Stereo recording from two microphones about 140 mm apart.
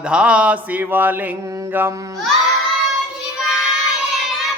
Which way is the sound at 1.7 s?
15° right (ahead or behind).